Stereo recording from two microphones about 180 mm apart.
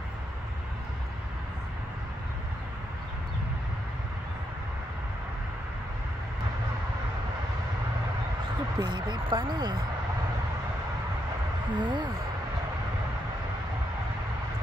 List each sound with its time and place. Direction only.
8.7 s speech: 25° right (ahead or behind)
11.7 s speech: 25° right (ahead or behind)